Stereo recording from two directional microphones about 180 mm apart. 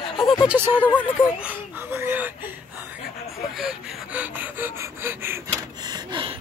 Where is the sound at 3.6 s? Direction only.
5° right (ahead or behind); by 6.3 s 25° right (ahead or behind).